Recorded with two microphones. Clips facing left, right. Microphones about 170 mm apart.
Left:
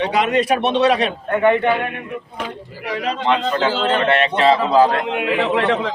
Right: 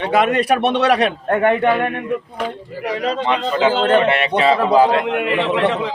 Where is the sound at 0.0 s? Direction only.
55° right (ahead or behind).